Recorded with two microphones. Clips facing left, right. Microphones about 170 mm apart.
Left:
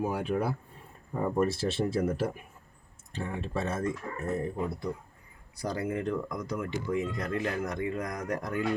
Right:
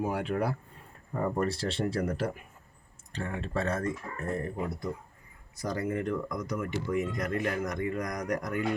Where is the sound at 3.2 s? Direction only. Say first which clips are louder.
Right 1 dB; 15° left (ahead or behind).